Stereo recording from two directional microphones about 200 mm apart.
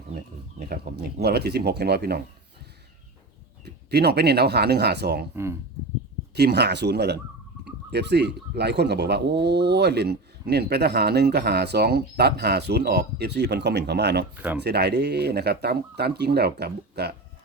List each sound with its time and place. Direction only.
0.7 s speech: 50° right (ahead or behind)
3.8 s speech: 55° right (ahead or behind)
6.3 s speech: 55° right (ahead or behind)
14.3 s speech: 10° right (ahead or behind)
14.6 s speech: 55° right (ahead or behind)